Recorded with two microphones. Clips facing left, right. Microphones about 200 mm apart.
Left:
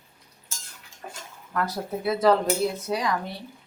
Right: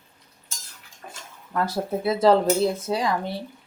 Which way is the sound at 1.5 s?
25° right (ahead or behind).